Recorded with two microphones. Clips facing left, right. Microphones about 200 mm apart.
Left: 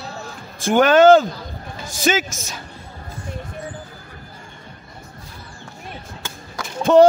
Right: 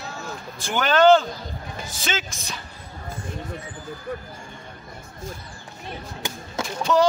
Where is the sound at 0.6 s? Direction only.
50° left (ahead or behind).